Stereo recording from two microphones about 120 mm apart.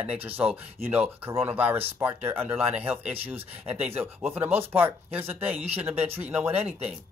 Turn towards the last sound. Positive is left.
turn(degrees=-15)  # may be behind; listen again after turning